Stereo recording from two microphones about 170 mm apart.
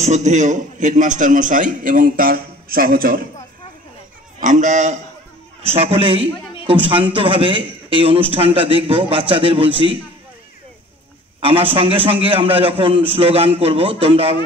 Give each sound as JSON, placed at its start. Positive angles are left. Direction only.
{"t": 0.0, "sound": "a man's voice", "side_deg": -40}
{"t": 4.4, "sound": "a man's voice", "side_deg": -45}
{"t": 11.4, "sound": "a man's voice", "side_deg": -30}